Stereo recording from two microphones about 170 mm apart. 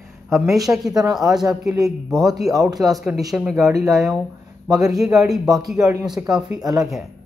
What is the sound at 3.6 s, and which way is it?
Speech, 20° right (ahead or behind).